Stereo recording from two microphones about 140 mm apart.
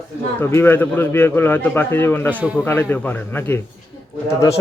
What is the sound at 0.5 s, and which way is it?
A man's voice, 15° left (ahead or behind).